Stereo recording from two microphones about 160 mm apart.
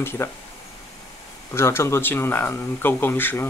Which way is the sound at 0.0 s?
15° left (ahead or behind).